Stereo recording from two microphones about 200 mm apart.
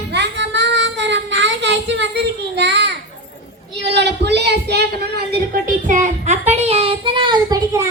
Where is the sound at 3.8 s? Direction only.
60° right (ahead or behind); by 6.6 s 35° right (ahead or behind).